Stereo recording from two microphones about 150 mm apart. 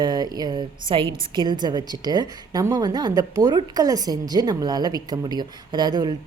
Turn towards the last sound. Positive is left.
turn(degrees=-30)  # may be behind; listen again after turning